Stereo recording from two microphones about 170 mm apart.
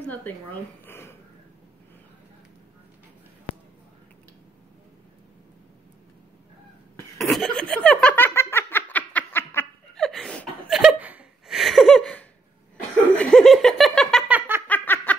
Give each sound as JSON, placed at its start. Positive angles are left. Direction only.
{"t": 0.0, "sound": "speech", "side_deg": 10}
{"t": 7.2, "sound": "laughter", "side_deg": 0}
{"t": 9.9, "sound": "chuckle", "side_deg": 0}
{"t": 10.8, "sound": "laughter", "side_deg": -5}
{"t": 14.7, "sound": "a sound", "side_deg": 10}